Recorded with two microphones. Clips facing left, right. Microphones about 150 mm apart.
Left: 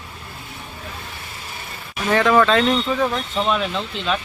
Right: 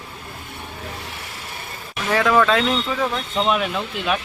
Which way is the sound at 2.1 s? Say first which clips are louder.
Left 1 dB; centre (ahead or behind).